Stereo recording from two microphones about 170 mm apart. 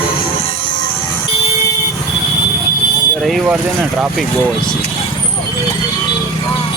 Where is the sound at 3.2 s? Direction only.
5° right (ahead or behind).